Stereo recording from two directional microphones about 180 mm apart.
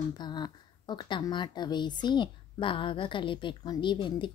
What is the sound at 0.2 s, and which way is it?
A woman's voice, 25° left (ahead or behind).